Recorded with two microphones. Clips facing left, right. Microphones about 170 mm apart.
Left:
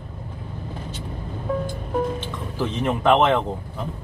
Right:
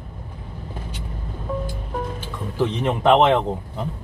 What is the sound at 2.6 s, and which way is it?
Speech, 20° right (ahead or behind).